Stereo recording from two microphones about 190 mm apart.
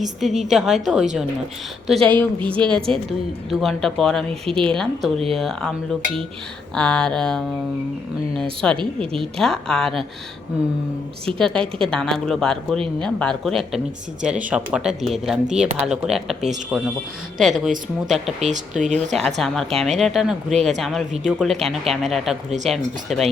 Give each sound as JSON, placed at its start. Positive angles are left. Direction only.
{"t": 0.0, "sound": "speech", "side_deg": 0}
{"t": 2.4, "sound": "a woman's voice", "side_deg": -25}
{"t": 2.9, "sound": "speech", "side_deg": 5}
{"t": 8.6, "sound": "a woman's voice", "side_deg": 5}
{"t": 11.3, "sound": "speech", "side_deg": 5}
{"t": 18.3, "sound": "speech", "side_deg": -35}
{"t": 18.9, "sound": "speech", "side_deg": 0}